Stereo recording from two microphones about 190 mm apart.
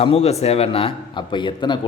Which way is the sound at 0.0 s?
30° left (ahead or behind).